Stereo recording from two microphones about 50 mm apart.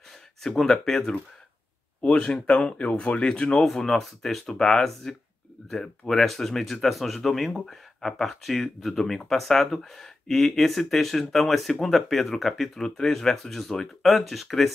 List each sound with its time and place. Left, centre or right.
0.4 s speech: centre
3.6 s speech: centre